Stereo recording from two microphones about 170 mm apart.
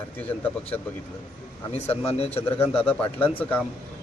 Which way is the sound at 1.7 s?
35° left (ahead or behind).